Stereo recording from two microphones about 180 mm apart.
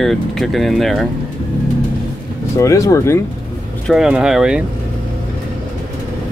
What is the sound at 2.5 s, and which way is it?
Speech, 15° left (ahead or behind).